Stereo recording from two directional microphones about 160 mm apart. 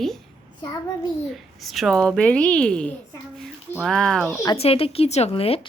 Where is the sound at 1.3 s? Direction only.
Centre (ahead or behind).